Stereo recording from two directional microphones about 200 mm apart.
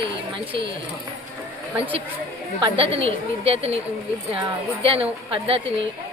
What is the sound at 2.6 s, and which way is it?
Speech, 30° right (ahead or behind).